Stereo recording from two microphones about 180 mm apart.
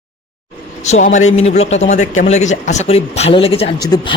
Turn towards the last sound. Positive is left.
turn(degrees=25)  # may be behind; listen again after turning